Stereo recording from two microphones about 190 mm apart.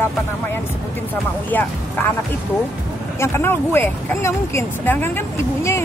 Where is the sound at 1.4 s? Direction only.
10° left (ahead or behind).